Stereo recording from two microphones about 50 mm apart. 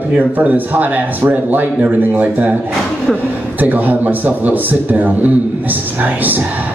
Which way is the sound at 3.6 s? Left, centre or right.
Right.